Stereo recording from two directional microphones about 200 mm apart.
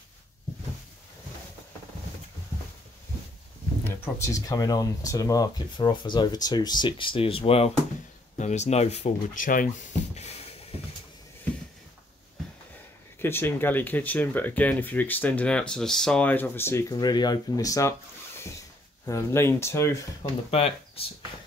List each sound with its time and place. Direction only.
3.8 s speech: 10° left (ahead or behind); by 9.7 s 45° left (ahead or behind)
13.2 s speech: 10° left (ahead or behind)
19.0 s speech: 15° left (ahead or behind)
20.5 s speech: 30° left (ahead or behind)